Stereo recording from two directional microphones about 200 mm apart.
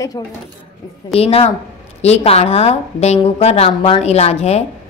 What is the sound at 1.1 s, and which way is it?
A woman's voice, 30° left (ahead or behind).